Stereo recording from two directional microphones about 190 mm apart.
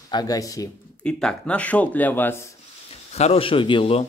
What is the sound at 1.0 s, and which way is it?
Speech, 5° left (ahead or behind).